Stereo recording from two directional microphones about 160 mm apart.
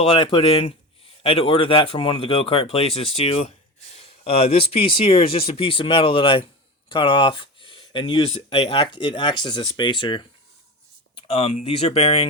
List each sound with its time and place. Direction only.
0.0 s speech: 30° left (ahead or behind)
11.3 s speech: 40° left (ahead or behind)